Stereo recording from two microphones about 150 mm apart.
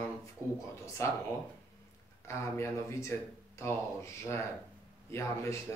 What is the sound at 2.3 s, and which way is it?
Speech, 20° left (ahead or behind).